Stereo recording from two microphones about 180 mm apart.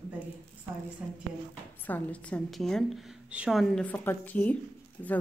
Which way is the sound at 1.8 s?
10° left (ahead or behind).